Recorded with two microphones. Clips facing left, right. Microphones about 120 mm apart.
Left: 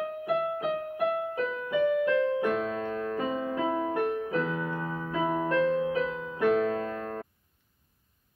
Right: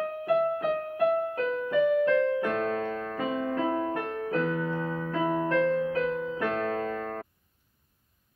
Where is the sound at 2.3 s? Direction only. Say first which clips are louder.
Left 1 dB; 15° left (ahead or behind).